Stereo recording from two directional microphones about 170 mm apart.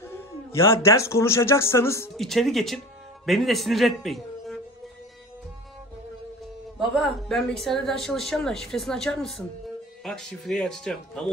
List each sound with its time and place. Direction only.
0.0 s speech: 15° left (ahead or behind)
2.1 s a man's voice: centre (ahead or behind)
7.0 s speech: centre (ahead or behind)